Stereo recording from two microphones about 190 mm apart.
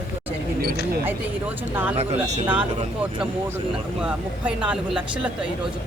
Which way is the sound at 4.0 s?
5° right (ahead or behind).